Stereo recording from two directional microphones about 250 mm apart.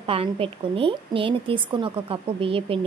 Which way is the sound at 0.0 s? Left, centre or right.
Right.